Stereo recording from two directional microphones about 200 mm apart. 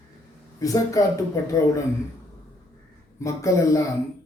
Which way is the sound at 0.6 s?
15° left (ahead or behind).